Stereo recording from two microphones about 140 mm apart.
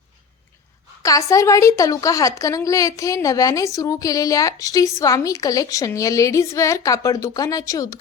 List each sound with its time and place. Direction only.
1.0 s a woman's voice: 25° left (ahead or behind)